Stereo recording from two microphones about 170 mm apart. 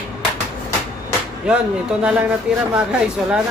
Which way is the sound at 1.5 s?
5° right (ahead or behind).